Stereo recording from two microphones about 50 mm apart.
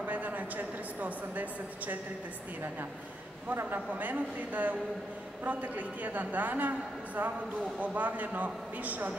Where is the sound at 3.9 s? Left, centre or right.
Right.